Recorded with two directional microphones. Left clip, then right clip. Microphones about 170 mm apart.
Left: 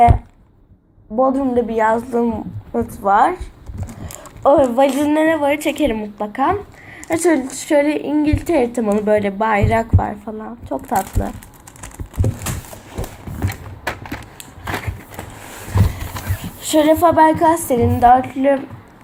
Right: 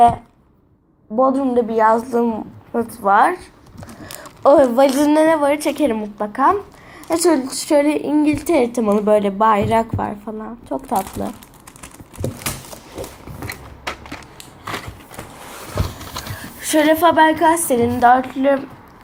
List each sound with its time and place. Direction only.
1.1 s a woman's voice: 5° right (ahead or behind)
4.0 s a sound: centre (ahead or behind)
4.4 s a woman's voice: 10° right (ahead or behind)
5.5 s a woman's voice: centre (ahead or behind)
13.5 s a sound: 50° left (ahead or behind)
16.4 s a woman's voice: 5° left (ahead or behind)